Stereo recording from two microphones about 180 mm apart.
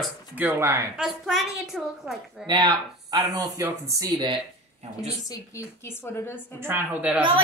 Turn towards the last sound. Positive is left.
turn(degrees=-10)  # may be behind; listen again after turning